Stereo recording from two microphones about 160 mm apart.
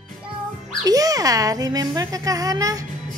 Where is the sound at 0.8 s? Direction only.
20° right (ahead or behind).